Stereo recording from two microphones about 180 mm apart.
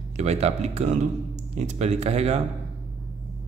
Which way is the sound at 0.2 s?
40° right (ahead or behind).